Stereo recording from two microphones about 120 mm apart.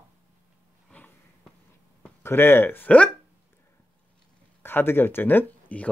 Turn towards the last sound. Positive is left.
turn(degrees=15)  # may be behind; listen again after turning